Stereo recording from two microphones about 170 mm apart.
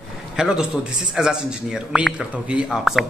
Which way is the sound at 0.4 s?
5° right (ahead or behind).